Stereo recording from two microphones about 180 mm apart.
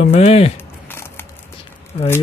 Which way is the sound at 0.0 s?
35° left (ahead or behind).